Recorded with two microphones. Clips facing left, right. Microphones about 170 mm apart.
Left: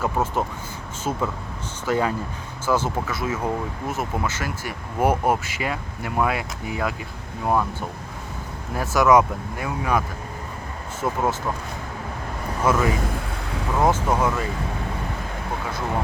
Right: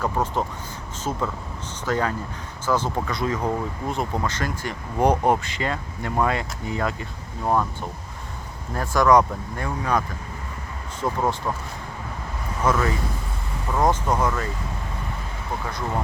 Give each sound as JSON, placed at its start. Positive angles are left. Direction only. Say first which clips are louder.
{"t": 0.0, "sound": "speech", "louder": "left 1 dB", "side_deg": 10}
{"t": 8.7, "sound": "speech", "louder": "left 1 dB", "side_deg": 5}
{"t": 11.0, "sound": "speech", "louder": "even", "side_deg": 5}
{"t": 12.7, "sound": "speech", "louder": "left 2 dB", "side_deg": 10}